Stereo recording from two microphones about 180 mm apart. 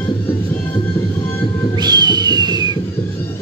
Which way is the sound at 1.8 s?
25° right (ahead or behind).